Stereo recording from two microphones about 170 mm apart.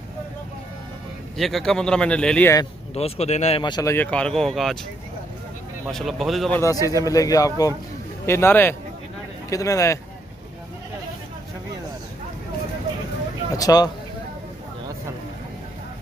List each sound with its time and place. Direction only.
1.3 s a man's voice: centre (ahead or behind)
2.9 s speech: 40° left (ahead or behind)
3.6 s a man's voice: 25° left (ahead or behind)
3.9 s a man's voice: 10° left (ahead or behind)
5.9 s a man's voice: centre (ahead or behind)
6.6 s a man's voice: 20° left (ahead or behind)
13.6 s a man's voice: 20° left (ahead or behind)